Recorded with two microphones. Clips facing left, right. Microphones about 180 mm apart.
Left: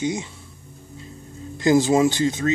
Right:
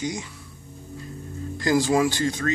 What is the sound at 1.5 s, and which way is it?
Speech, 20° left (ahead or behind).